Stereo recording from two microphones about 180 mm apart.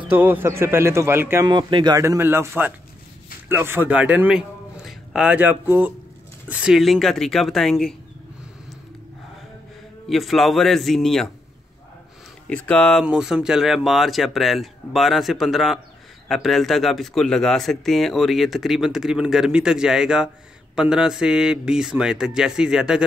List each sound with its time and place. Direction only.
0.1 s speech: 10° right (ahead or behind)
1.5 s a man's voice: 25° right (ahead or behind); by 7.9 s centre (ahead or behind)
10.0 s speech: centre (ahead or behind)
12.4 s speech: 5° left (ahead or behind)